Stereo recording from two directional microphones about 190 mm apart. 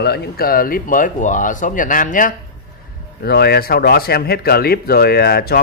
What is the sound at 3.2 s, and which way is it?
Speech, 55° left (ahead or behind).